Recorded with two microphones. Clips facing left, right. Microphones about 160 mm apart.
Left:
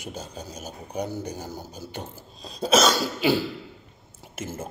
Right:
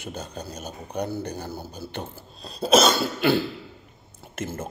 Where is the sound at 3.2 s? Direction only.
10° left (ahead or behind).